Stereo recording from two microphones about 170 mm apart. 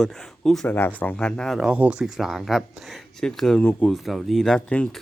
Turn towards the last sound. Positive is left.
turn(degrees=5)  # may be behind; listen again after turning